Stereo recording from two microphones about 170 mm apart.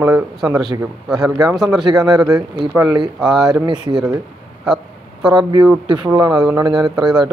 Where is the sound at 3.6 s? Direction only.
25° right (ahead or behind).